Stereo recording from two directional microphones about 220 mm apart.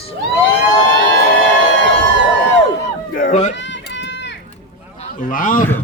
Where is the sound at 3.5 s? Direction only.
55° left (ahead or behind).